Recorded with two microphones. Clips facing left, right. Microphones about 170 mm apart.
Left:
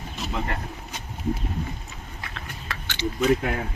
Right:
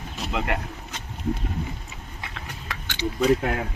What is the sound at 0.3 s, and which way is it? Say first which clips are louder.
Speech: right 3 dB; 80° right.